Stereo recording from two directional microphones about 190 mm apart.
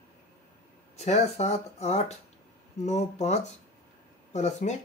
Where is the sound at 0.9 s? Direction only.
35° left (ahead or behind).